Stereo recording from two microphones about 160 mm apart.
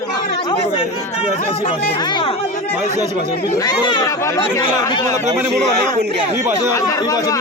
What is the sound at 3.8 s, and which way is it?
Speech, 25° left (ahead or behind).